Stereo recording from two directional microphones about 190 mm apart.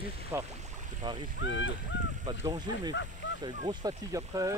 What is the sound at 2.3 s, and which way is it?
Speech, 20° right (ahead or behind).